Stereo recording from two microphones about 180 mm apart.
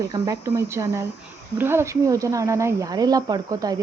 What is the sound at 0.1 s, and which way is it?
Speech, 15° right (ahead or behind).